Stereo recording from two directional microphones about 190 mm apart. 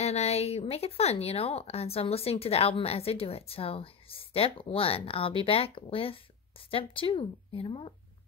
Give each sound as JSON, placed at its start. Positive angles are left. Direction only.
{"t": 0.0, "sound": "a woman's voice", "side_deg": 35}